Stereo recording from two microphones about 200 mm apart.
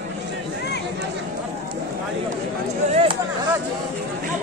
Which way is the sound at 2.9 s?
30° right (ahead or behind).